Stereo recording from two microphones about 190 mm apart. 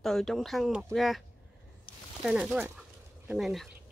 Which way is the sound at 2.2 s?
5° right (ahead or behind).